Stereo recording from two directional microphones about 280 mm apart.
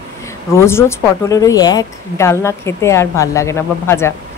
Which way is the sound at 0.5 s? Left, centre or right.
Centre.